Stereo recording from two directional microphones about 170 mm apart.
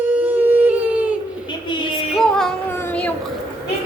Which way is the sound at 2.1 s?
5° left (ahead or behind).